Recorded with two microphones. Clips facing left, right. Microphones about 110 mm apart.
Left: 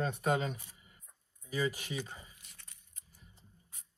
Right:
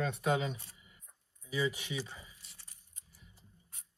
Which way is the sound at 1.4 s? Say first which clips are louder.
Even; 45° left (ahead or behind).